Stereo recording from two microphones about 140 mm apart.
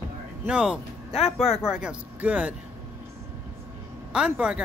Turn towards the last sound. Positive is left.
turn(degrees=-5)  # may be behind; listen again after turning